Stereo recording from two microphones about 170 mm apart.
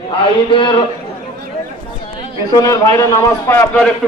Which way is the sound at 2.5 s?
20° left (ahead or behind).